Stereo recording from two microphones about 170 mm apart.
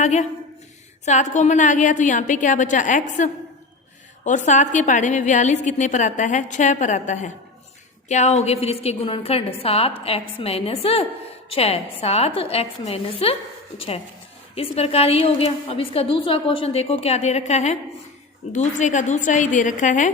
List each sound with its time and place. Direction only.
0.0 s a woman's voice: 45° left (ahead or behind)
4.3 s a woman's voice: 45° left (ahead or behind)